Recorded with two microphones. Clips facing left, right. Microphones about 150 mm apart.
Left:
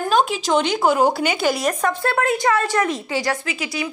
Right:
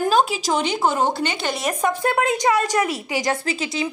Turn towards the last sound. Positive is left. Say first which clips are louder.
# right 2 dB
turn(degrees=-25)  # may be behind; listen again after turning